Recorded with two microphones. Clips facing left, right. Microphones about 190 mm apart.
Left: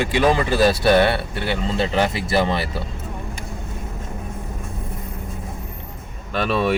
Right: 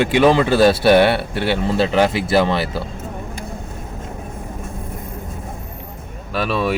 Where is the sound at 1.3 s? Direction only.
70° right (ahead or behind).